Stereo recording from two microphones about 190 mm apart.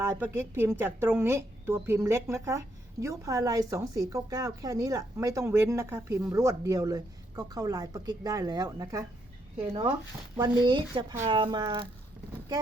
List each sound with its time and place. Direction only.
0.0 s a woman's voice: 15° right (ahead or behind)